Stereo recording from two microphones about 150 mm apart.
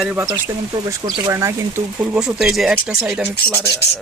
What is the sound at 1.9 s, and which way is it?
Speech, 5° right (ahead or behind).